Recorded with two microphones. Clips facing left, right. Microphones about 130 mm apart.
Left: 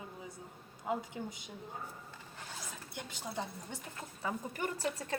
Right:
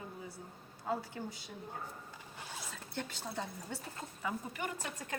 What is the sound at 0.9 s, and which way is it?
Speech, 20° left (ahead or behind).